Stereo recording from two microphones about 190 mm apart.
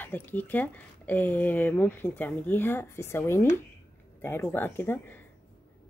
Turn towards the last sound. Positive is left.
turn(degrees=10)  # may be behind; listen again after turning